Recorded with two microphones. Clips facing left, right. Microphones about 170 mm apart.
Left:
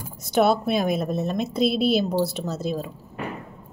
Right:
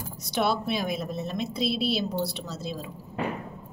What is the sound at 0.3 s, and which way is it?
A woman's voice, 50° left (ahead or behind).